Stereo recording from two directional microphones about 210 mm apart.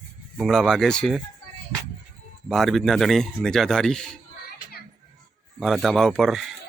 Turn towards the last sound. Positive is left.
turn(degrees=0)  # may be behind; listen again after turning